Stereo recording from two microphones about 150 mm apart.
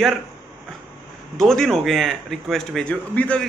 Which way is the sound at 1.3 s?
5° left (ahead or behind).